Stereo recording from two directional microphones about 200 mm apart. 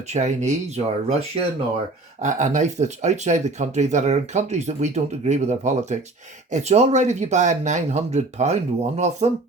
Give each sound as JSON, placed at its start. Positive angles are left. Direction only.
{"t": 0.1, "sound": "speech", "side_deg": -35}